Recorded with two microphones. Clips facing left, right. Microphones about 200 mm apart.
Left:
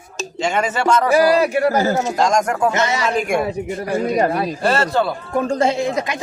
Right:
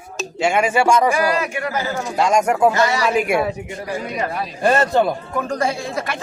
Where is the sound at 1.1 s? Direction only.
35° left (ahead or behind).